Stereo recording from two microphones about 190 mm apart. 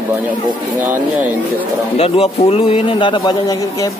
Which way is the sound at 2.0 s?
35° left (ahead or behind).